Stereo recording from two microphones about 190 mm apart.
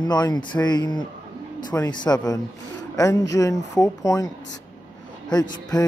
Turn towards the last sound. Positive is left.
turn(degrees=20)  # may be behind; listen again after turning